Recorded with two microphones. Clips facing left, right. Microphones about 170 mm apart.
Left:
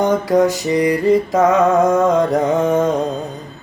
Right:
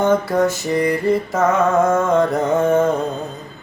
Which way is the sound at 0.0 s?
15° left (ahead or behind).